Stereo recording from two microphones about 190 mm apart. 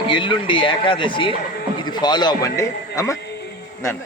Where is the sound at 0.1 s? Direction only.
25° left (ahead or behind).